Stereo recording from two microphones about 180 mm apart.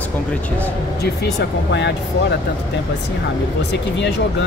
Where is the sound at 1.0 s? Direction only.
70° left (ahead or behind).